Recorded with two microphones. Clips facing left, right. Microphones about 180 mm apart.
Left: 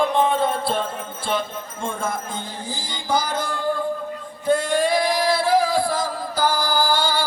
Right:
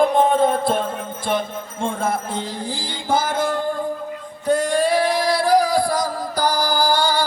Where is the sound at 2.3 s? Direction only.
70° right (ahead or behind).